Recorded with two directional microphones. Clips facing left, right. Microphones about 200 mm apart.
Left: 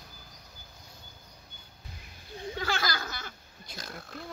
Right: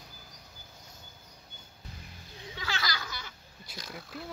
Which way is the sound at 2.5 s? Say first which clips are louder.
Left 4 dB; 50° left (ahead or behind).